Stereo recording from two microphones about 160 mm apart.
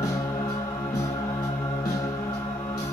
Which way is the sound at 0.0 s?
20° left (ahead or behind).